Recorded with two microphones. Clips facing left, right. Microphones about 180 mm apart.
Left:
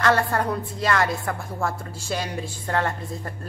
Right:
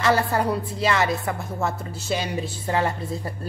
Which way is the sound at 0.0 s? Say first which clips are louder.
Right 1 dB; 5° right (ahead or behind).